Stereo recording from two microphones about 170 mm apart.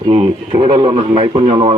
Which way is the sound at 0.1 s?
30° right (ahead or behind).